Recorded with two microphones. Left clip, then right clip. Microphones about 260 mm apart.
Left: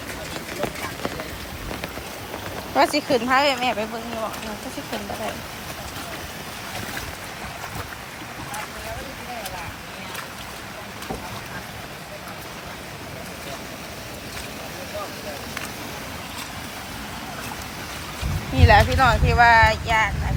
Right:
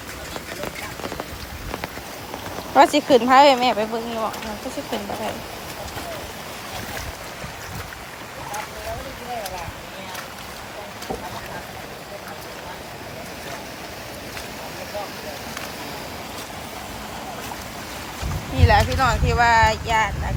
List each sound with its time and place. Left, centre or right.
2.7 s speech: centre
18.5 s speech: centre